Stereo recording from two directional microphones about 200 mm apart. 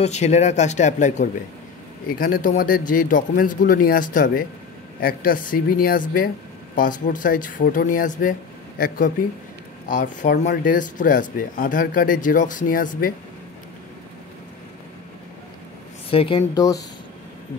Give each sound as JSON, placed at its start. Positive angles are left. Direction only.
{"t": 0.0, "sound": "speech", "side_deg": 35}
{"t": 16.1, "sound": "speech", "side_deg": 30}